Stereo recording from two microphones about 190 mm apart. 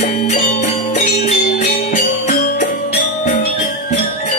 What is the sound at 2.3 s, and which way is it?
Music, 45° left (ahead or behind).